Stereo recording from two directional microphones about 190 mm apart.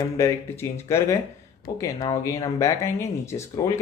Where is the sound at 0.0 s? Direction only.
15° left (ahead or behind).